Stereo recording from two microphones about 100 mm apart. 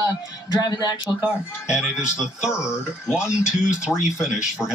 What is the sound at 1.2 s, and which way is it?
Speech, 10° right (ahead or behind).